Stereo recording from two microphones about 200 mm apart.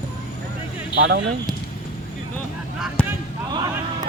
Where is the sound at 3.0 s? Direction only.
5° left (ahead or behind).